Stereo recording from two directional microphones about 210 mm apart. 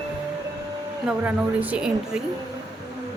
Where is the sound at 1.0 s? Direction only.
5° right (ahead or behind).